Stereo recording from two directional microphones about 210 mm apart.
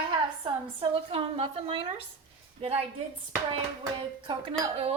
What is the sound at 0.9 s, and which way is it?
A woman's voice, 30° right (ahead or behind).